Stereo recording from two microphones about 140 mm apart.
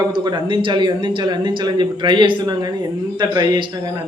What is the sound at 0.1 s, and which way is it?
Speech, 35° right (ahead or behind).